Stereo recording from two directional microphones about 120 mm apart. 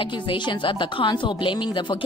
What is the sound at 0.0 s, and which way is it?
Speech, 45° left (ahead or behind).